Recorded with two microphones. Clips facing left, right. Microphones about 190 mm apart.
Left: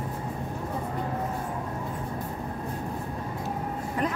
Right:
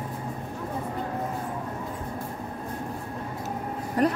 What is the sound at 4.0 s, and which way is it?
Vehicle, 40° right (ahead or behind).